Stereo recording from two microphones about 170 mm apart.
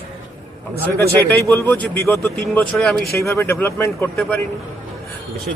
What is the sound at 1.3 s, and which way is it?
A man's voice, 10° left (ahead or behind).